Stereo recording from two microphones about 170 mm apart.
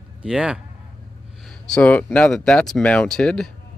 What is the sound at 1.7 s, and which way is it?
Speech, 10° left (ahead or behind).